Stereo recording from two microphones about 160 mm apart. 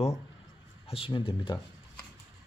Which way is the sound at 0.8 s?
35° left (ahead or behind).